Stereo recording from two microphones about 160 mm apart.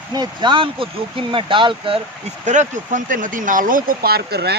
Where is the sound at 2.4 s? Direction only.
50° right (ahead or behind).